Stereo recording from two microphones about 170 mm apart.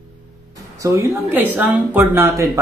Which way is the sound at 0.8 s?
15° right (ahead or behind).